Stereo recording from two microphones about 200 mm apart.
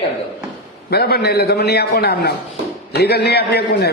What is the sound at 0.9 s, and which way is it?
A man's voice, 50° left (ahead or behind).